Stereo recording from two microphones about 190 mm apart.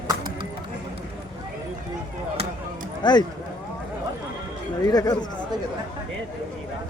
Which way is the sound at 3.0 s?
20° left (ahead or behind).